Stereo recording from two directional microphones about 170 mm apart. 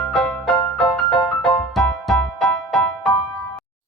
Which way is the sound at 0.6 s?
25° left (ahead or behind).